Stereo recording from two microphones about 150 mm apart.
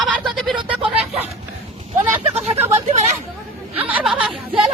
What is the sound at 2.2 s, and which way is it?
Speech, 45° right (ahead or behind).